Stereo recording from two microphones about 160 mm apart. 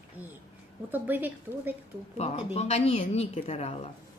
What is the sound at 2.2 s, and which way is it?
Speech, 40° left (ahead or behind).